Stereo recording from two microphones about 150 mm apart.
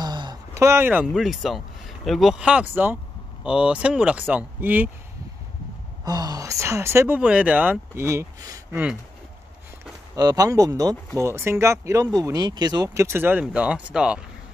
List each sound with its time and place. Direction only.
0.0 s a sound: 30° right (ahead or behind)
1.1 s speech: centre (ahead or behind)
6.0 s speech: 25° right (ahead or behind)
10.1 s speech: 25° right (ahead or behind); by 14.2 s 5° right (ahead or behind)